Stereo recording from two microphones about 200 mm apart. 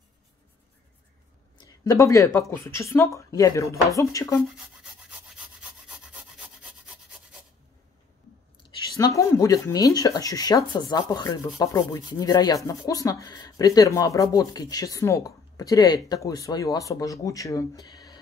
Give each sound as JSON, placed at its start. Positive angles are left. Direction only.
{"t": 1.6, "sound": "speech", "side_deg": 20}
{"t": 5.6, "sound": "rub", "side_deg": -5}
{"t": 8.6, "sound": "speech", "side_deg": 20}